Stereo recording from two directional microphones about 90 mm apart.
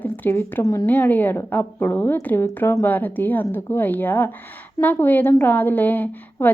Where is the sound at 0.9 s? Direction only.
20° left (ahead or behind).